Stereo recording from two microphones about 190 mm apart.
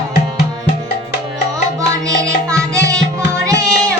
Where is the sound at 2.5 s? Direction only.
15° right (ahead or behind).